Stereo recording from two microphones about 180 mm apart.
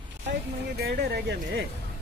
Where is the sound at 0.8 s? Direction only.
60° right (ahead or behind).